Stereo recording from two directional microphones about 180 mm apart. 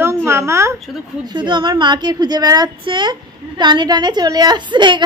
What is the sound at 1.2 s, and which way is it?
A woman's voice, 25° right (ahead or behind).